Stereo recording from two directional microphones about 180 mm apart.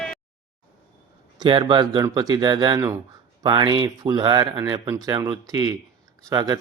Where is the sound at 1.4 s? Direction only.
25° right (ahead or behind).